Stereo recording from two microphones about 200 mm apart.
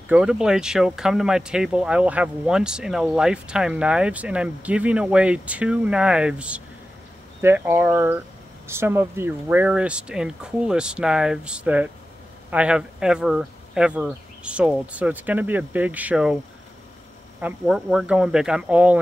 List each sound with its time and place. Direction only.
0.1 s speech: 5° right (ahead or behind)
17.4 s speech: 5° right (ahead or behind)